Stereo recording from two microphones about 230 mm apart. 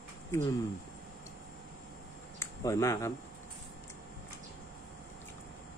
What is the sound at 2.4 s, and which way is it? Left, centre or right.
Speech, centre.